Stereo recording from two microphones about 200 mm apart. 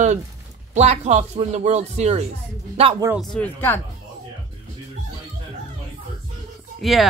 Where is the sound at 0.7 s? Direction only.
35° right (ahead or behind).